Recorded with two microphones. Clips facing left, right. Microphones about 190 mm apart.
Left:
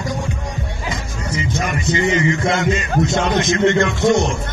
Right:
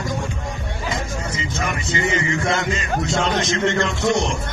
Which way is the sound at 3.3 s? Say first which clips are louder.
Left 5 dB; 20° left (ahead or behind).